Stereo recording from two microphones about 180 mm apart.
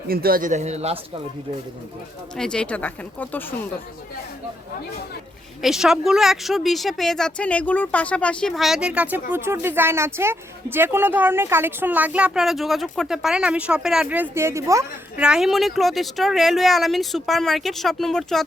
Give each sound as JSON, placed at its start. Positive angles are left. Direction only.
{"t": 0.1, "sound": "speech", "side_deg": -55}
{"t": 2.3, "sound": "speech", "side_deg": 5}
{"t": 5.6, "sound": "a woman's voice", "side_deg": 0}
{"t": 15.2, "sound": "a woman's voice", "side_deg": -5}